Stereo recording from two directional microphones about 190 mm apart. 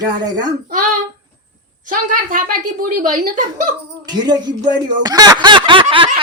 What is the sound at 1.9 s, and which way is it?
A woman's voice, 45° right (ahead or behind).